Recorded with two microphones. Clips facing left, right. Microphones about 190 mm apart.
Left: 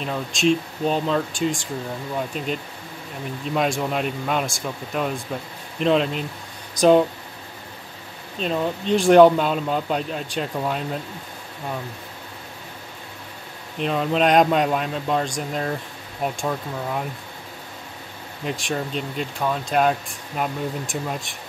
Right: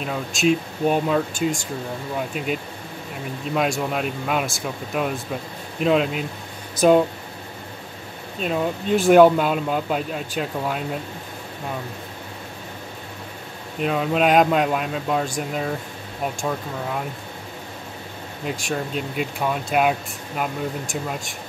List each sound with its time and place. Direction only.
0.0 s speech: 5° right (ahead or behind)
8.4 s speech: 5° right (ahead or behind)
13.7 s speech: 5° right (ahead or behind)
18.4 s speech: centre (ahead or behind)